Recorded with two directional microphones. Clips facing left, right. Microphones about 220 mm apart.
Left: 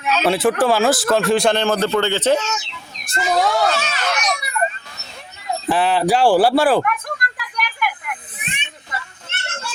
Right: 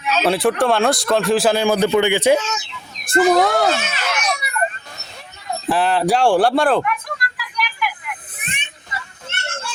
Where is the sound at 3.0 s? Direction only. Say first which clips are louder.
Right 5 dB; 55° right (ahead or behind).